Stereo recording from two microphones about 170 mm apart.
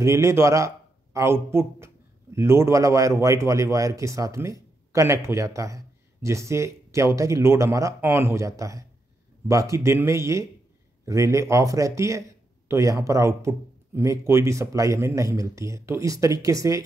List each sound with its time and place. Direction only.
0.0 s a man's voice: 15° right (ahead or behind)